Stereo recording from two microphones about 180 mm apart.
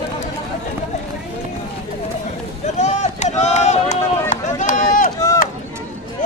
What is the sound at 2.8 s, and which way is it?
Run, 40° left (ahead or behind).